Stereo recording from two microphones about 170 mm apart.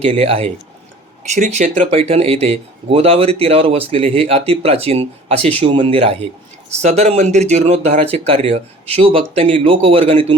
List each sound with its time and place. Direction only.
0.0 s speech: 35° right (ahead or behind)